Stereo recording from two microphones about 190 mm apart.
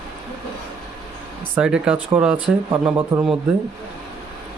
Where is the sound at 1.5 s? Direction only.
5° right (ahead or behind).